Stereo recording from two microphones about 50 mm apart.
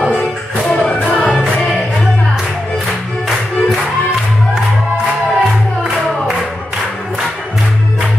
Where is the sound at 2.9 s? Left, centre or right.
Centre.